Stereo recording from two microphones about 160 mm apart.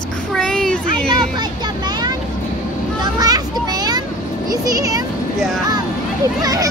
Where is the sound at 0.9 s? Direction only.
25° right (ahead or behind).